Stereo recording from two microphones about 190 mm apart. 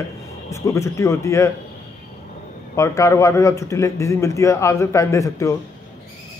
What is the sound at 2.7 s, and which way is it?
A man's voice, 15° left (ahead or behind).